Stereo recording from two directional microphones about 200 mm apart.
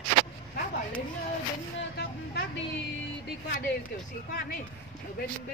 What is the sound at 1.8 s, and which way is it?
Vehicle, 60° left (ahead or behind).